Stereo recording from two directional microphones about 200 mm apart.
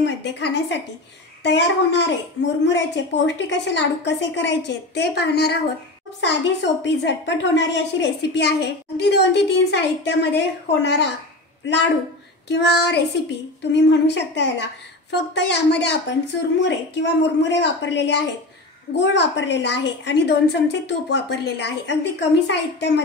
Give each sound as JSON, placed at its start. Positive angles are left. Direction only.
{"t": 0.0, "sound": "a woman's voice", "side_deg": 60}
{"t": 12.4, "sound": "a woman's voice", "side_deg": 55}